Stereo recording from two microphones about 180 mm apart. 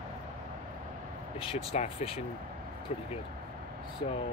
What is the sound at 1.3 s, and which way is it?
Speech, 35° left (ahead or behind).